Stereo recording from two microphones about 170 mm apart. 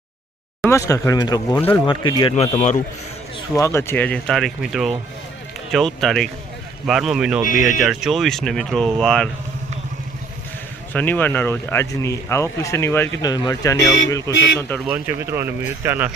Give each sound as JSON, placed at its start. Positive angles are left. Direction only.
{"t": 0.7, "sound": "speech", "side_deg": 20}
{"t": 1.5, "sound": "speech", "side_deg": 10}
{"t": 1.9, "sound": "speech", "side_deg": 25}
{"t": 2.3, "sound": "speech", "side_deg": 45}
{"t": 3.5, "sound": "speech", "side_deg": 15}
{"t": 10.9, "sound": "speech", "side_deg": 10}
{"t": 14.8, "sound": "speech", "side_deg": -10}